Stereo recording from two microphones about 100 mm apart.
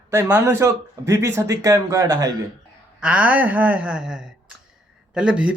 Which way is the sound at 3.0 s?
15° right (ahead or behind).